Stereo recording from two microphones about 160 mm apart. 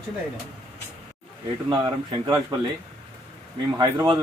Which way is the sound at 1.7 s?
30° right (ahead or behind).